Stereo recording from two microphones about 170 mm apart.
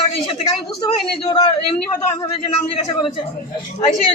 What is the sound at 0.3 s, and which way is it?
Speech, 30° left (ahead or behind).